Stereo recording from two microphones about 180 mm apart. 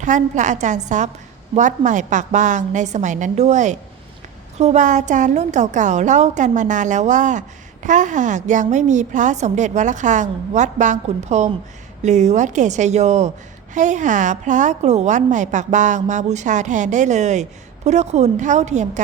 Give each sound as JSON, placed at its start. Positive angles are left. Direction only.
{"t": 0.0, "sound": "a woman's voice", "side_deg": -45}